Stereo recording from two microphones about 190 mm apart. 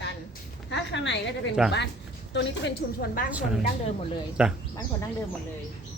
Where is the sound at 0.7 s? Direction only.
65° left (ahead or behind).